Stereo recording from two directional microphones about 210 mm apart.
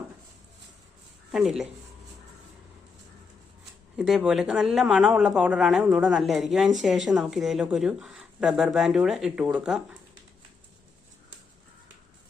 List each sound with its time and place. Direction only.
1.3 s a woman's voice: centre (ahead or behind)
3.9 s a woman's voice: 5° right (ahead or behind)